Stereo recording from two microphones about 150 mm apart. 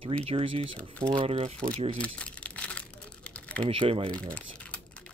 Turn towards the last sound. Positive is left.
turn(degrees=10)  # may be behind; listen again after turning